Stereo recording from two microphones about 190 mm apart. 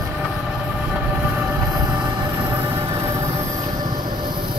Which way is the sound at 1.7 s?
20° right (ahead or behind).